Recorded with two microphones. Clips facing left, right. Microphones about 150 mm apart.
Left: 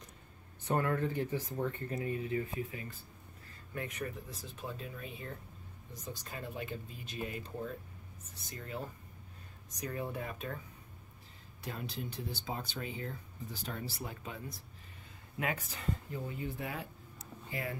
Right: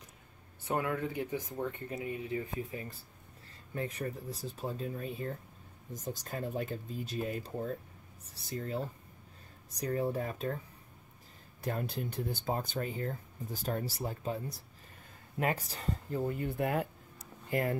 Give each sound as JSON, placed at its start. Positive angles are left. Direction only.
{"t": 0.7, "sound": "speech", "side_deg": -10}
{"t": 2.2, "sound": "speech", "side_deg": -30}
{"t": 11.6, "sound": "speech", "side_deg": -50}